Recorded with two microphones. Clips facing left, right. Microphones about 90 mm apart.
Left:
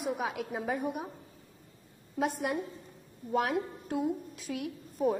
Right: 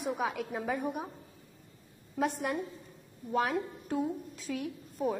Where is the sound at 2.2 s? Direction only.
5° left (ahead or behind).